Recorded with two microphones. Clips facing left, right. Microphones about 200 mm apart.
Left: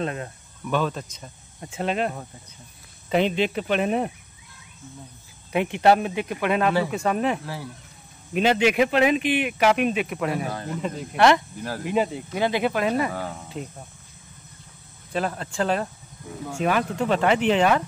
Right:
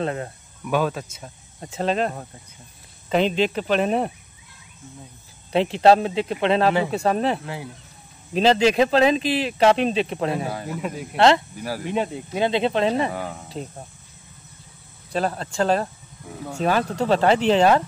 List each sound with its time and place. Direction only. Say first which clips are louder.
0.0 s speech: right 3 dB; 25° right (ahead or behind)
0.7 s speech: right 2 dB; 10° right (ahead or behind)
1.7 s speech: right 2 dB; 35° right (ahead or behind)
3.3 s speech: right 2 dB; 35° right (ahead or behind)
5.5 s speech: right 3 dB; 30° right (ahead or behind)
7.4 s speech: right 1 dB; 20° right (ahead or behind)
8.3 s speech: right 3 dB; 35° right (ahead or behind)
10.5 s speech: right 1 dB; 5° right (ahead or behind)
11.1 s speech: right 1 dB; 25° right (ahead or behind)
11.8 s speech: left 2 dB; 5° left (ahead or behind)
12.4 s speech: right 2 dB; 25° right (ahead or behind)
15.1 s speech: right 3 dB; 35° right (ahead or behind)